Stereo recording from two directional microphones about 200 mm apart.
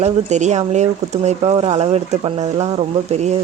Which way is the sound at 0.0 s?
35° right (ahead or behind).